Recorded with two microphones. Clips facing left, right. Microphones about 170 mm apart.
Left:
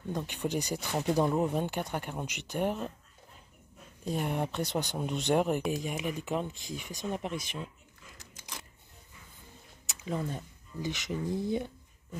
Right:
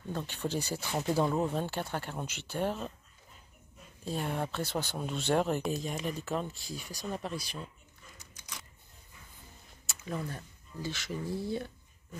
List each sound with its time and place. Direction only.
0.1 s speech: 10° left (ahead or behind)
4.0 s speech: 15° left (ahead or behind)
9.8 s speech: 20° left (ahead or behind)